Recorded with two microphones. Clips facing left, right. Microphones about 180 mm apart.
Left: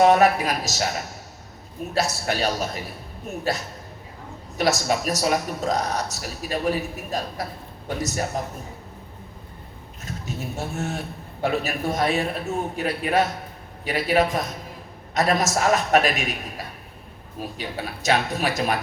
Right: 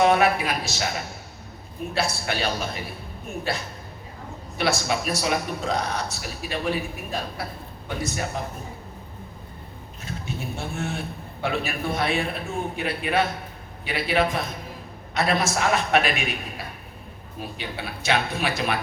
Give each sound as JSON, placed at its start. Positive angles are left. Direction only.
{"t": 0.0, "sound": "a man's voice", "side_deg": 40}
{"t": 10.1, "sound": "a man's voice", "side_deg": 40}